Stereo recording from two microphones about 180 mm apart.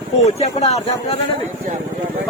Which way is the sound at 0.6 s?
35° left (ahead or behind).